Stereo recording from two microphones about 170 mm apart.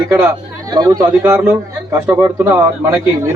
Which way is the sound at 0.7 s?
20° right (ahead or behind).